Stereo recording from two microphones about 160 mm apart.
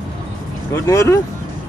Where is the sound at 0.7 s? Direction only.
20° left (ahead or behind).